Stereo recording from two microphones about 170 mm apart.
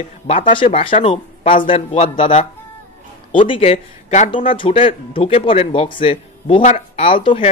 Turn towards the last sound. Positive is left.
turn(degrees=30)  # may be behind; listen again after turning